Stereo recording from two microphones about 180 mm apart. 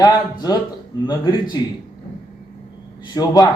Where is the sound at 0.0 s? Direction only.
20° left (ahead or behind).